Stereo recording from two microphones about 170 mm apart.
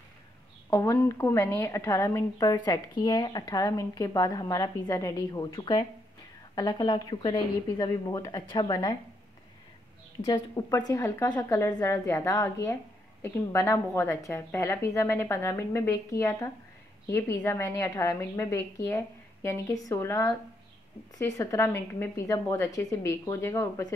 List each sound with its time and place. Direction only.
0.7 s a woman's voice: 15° left (ahead or behind)
10.2 s a woman's voice: 20° left (ahead or behind)